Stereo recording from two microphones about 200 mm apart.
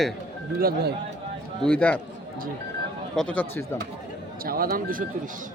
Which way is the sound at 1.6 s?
5° left (ahead or behind).